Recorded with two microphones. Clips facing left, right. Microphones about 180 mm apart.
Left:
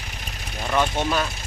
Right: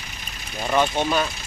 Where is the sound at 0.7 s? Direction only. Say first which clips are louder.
Right 2 dB; 5° right (ahead or behind).